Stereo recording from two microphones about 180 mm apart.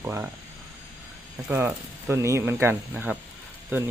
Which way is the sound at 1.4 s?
10° right (ahead or behind).